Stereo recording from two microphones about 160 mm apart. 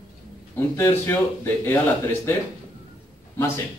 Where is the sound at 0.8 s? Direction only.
15° left (ahead or behind).